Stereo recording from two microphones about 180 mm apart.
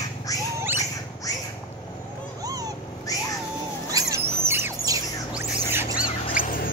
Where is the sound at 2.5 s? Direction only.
20° right (ahead or behind).